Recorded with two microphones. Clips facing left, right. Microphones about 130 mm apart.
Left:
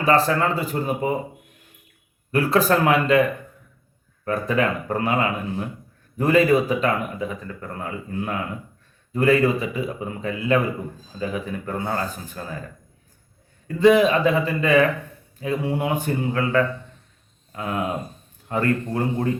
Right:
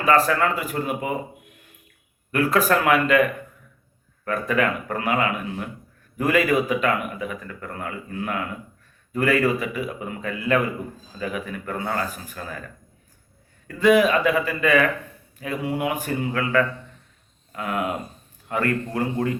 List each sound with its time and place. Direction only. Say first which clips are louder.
0.0 s a man's voice: even; 30° left (ahead or behind)
2.3 s a man's voice: left 1 dB; 30° left (ahead or behind)
4.3 s a man's voice: left 1 dB; 30° left (ahead or behind)
13.7 s a man's voice: left 2 dB; 25° left (ahead or behind)